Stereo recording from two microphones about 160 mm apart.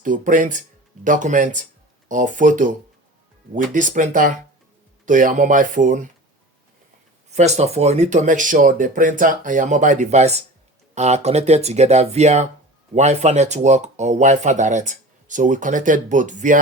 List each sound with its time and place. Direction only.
0.0 s speech: 55° right (ahead or behind)
7.3 s speech: 45° right (ahead or behind)